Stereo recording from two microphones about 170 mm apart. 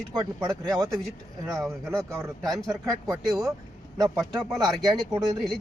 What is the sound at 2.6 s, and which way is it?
Speech, 20° right (ahead or behind).